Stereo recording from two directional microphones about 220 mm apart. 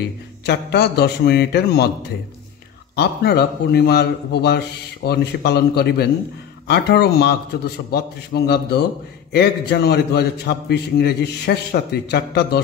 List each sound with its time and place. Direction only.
0.5 s a man's voice: 50° left (ahead or behind)
3.0 s a man's voice: 45° left (ahead or behind)